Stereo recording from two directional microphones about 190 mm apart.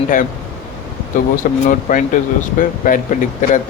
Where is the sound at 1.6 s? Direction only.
45° left (ahead or behind).